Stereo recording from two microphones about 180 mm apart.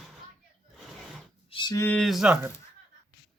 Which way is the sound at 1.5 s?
25° left (ahead or behind).